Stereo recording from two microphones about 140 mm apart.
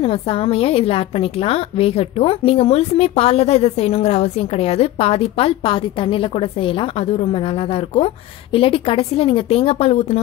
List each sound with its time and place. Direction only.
0.0 s a woman's voice: 45° left (ahead or behind)